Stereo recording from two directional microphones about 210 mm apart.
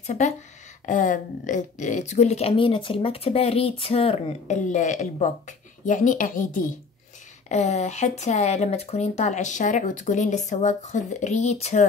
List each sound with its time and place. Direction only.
0.0 s a woman's voice: 35° left (ahead or behind)